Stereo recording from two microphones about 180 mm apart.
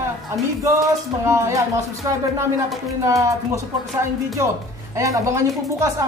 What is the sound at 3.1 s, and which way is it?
A woman's voice, 15° right (ahead or behind).